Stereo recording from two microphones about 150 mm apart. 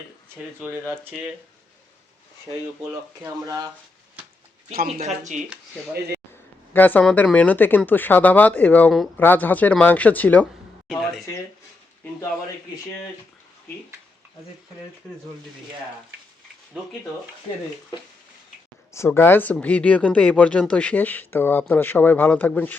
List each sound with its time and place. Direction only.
0.6 s speech: 15° right (ahead or behind)
3.4 s speech: 25° right (ahead or behind)
4.9 s speech: 45° right (ahead or behind)
6.7 s speech: 10° left (ahead or behind)
18.9 s speech: 15° left (ahead or behind)